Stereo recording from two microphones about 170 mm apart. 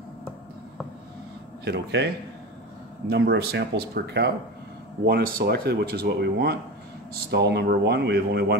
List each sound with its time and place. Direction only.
1.6 s speech: 80° right
3.1 s speech: 75° right (ahead or behind)